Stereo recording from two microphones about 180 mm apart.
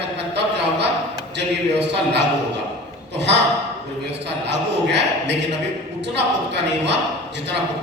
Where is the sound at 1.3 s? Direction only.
70° right (ahead or behind).